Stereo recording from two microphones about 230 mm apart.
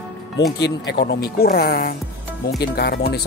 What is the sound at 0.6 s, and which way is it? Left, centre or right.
Speech, left.